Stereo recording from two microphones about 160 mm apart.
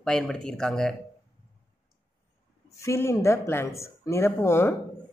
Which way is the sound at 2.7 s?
15° left (ahead or behind).